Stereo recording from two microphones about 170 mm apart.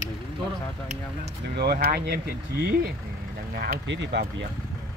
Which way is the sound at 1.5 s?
70° right (ahead or behind).